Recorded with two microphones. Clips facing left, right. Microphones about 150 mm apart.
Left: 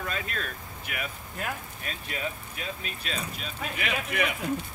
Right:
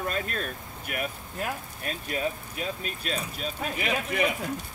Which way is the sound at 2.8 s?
40° right (ahead or behind).